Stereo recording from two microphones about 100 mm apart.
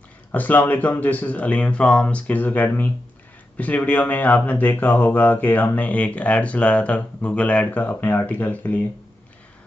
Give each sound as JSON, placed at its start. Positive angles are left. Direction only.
{"t": 0.3, "sound": "speech", "side_deg": 15}